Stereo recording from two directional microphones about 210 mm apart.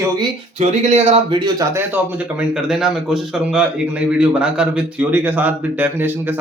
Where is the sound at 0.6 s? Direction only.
30° right (ahead or behind).